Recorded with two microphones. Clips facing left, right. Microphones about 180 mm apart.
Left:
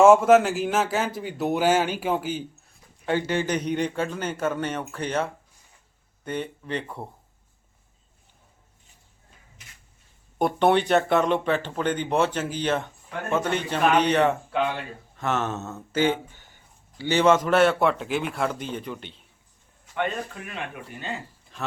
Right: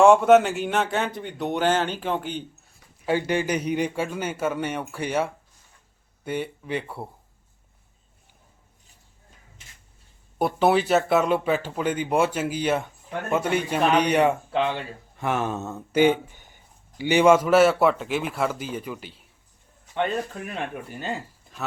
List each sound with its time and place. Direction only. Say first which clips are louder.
0.0 s a man's voice: even; centre (ahead or behind)
3.2 s speech: even; 10° right (ahead or behind)
10.3 s a man's voice: even; 5° right (ahead or behind)
20.4 s speech: right 5 dB; 40° right (ahead or behind)